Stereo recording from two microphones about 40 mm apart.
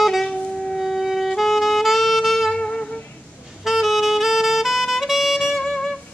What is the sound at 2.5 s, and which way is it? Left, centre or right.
Music, left.